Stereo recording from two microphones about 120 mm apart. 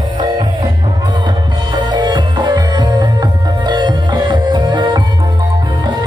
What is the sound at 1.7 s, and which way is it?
Music, 40° right (ahead or behind).